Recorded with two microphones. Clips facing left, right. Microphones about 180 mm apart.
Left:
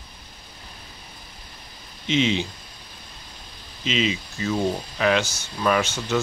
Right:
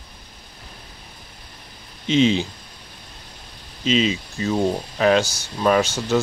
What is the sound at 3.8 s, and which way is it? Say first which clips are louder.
Speech: right 4 dB; 35° right (ahead or behind).